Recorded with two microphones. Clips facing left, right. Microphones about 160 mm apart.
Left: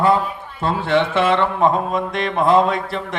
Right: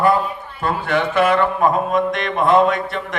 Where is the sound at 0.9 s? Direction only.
25° left (ahead or behind).